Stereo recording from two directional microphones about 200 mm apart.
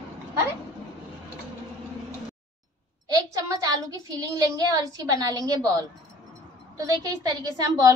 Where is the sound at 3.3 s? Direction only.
20° right (ahead or behind).